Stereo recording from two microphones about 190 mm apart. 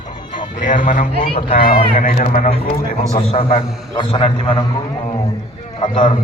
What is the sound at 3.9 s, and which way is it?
Speech, 30° left (ahead or behind).